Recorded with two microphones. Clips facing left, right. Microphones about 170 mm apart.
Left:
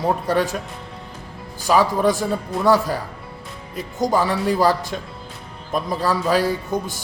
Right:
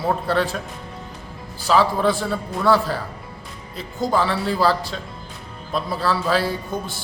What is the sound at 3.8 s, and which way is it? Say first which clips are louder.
Speech: left 3 dB; 45° left (ahead or behind).